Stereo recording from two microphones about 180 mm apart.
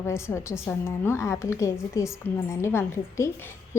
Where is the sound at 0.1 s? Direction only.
15° left (ahead or behind).